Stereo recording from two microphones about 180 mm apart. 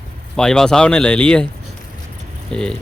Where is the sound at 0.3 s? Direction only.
5° left (ahead or behind).